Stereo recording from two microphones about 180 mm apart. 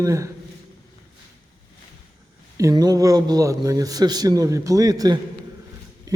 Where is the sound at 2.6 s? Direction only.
20° right (ahead or behind).